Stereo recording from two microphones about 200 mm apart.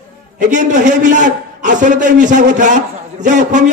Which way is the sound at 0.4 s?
40° right (ahead or behind).